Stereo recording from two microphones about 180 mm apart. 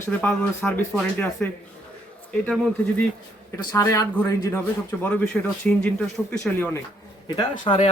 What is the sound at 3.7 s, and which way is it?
Speech, 20° left (ahead or behind).